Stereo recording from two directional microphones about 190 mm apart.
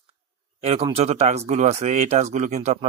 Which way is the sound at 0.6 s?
30° right (ahead or behind).